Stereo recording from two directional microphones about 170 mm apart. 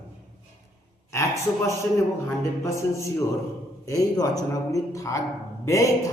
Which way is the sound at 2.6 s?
15° left (ahead or behind).